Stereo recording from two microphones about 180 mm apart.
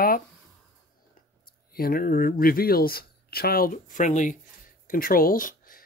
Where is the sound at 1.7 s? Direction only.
55° left (ahead or behind).